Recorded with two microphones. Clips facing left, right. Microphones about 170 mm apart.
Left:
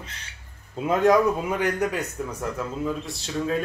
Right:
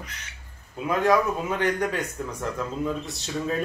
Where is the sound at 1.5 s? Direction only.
10° left (ahead or behind).